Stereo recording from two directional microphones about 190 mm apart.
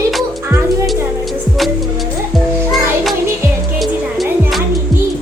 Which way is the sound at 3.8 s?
Centre (ahead or behind).